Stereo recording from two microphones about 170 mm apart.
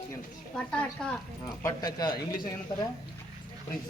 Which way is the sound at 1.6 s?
25° left (ahead or behind).